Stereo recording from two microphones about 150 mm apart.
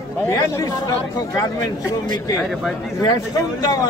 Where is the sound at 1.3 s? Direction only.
25° left (ahead or behind).